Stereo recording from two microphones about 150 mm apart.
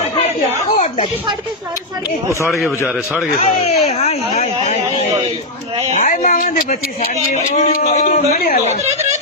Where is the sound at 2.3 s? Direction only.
20° left (ahead or behind).